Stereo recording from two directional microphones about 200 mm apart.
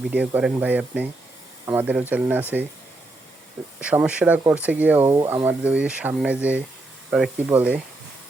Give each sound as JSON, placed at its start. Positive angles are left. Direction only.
{"t": 0.1, "sound": "speech", "side_deg": -5}
{"t": 3.8, "sound": "speech", "side_deg": -5}